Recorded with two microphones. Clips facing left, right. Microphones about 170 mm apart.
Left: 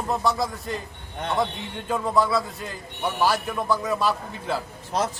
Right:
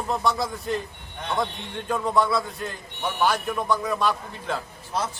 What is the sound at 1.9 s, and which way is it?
A man's voice, 5° left (ahead or behind).